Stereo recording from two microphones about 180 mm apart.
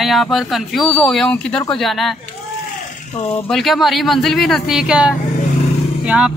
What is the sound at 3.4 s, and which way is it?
Speech, centre (ahead or behind).